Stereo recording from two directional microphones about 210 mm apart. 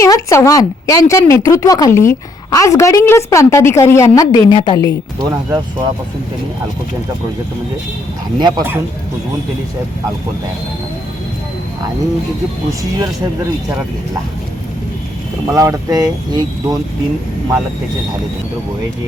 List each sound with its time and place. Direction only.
0.0 s speech: 15° left (ahead or behind)
5.2 s speech: 15° right (ahead or behind)
8.4 s speech: 20° right (ahead or behind)
15.5 s speech: 15° right (ahead or behind)